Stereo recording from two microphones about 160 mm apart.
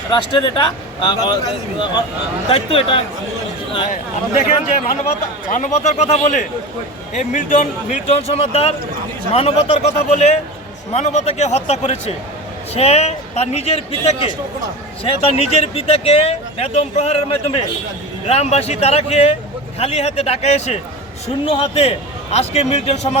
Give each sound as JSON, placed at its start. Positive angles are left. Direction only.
{"t": 0.1, "sound": "speech", "side_deg": 30}
{"t": 5.5, "sound": "speech", "side_deg": 55}